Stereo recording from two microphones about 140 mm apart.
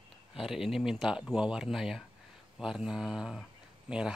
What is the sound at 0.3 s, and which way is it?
Speech, centre (ahead or behind).